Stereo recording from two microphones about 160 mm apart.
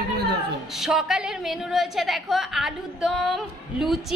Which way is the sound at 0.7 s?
Centre (ahead or behind).